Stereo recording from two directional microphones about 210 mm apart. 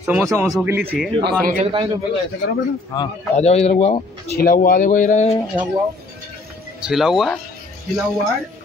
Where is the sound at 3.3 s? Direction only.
30° left (ahead or behind).